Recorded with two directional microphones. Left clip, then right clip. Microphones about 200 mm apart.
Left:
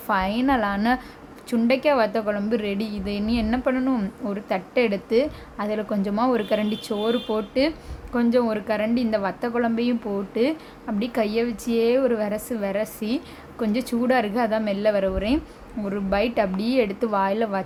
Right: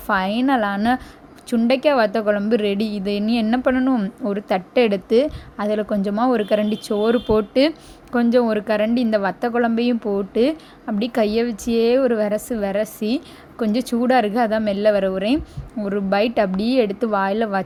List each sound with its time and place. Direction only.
0.1 s a woman's voice: 25° right (ahead or behind)